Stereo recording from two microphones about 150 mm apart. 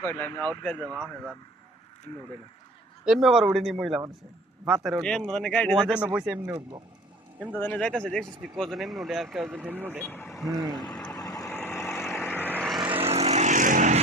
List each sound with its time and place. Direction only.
0.0 s speech: 15° left (ahead or behind)
3.1 s speech: centre (ahead or behind)
5.9 s speech: 10° right (ahead or behind)
7.6 s speech: 10° left (ahead or behind)
9.6 s speech: 15° right (ahead or behind)
10.0 s speech: 15° left (ahead or behind)
11.1 s vehicle: 25° left (ahead or behind)
12.6 s vehicle: centre (ahead or behind)
13.1 s vehicle: 45° right (ahead or behind)